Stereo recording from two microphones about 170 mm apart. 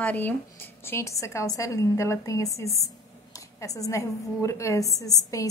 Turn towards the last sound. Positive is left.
turn(degrees=20)  # may be behind; listen again after turning